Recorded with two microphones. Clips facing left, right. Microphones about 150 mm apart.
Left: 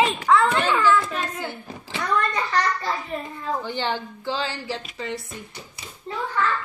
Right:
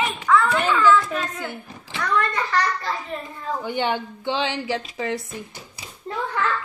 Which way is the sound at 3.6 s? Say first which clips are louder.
Right 6 dB; 10° right (ahead or behind).